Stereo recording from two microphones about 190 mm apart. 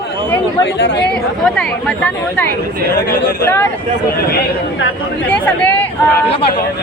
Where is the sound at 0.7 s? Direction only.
70° left (ahead or behind).